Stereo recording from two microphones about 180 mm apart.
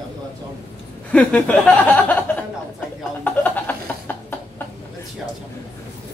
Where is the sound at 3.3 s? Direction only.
10° left (ahead or behind).